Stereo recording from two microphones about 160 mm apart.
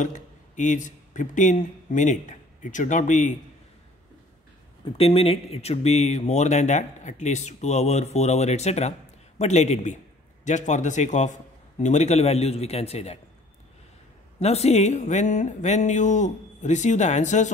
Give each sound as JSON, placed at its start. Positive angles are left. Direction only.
{"t": 0.0, "sound": "speech", "side_deg": 50}
{"t": 4.8, "sound": "speech", "side_deg": 35}
{"t": 14.4, "sound": "speech", "side_deg": 40}